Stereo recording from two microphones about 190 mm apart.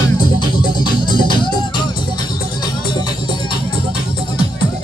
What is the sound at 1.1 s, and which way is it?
Music, 25° left (ahead or behind).